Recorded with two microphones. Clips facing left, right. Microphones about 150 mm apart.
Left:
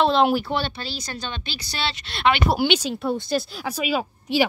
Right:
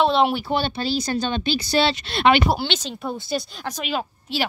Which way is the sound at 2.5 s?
10° left (ahead or behind).